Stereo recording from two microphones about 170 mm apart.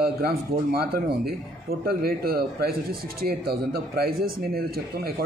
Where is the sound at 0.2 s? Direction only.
70° right (ahead or behind).